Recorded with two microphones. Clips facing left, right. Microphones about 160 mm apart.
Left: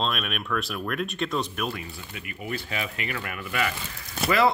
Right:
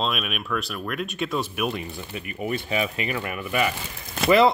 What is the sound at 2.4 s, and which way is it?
Speech, 20° right (ahead or behind).